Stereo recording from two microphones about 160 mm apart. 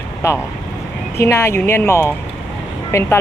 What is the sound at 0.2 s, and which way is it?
Speech, 15° left (ahead or behind).